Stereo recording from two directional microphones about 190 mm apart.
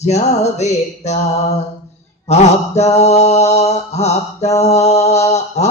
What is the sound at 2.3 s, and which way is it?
Mantra, 35° left (ahead or behind).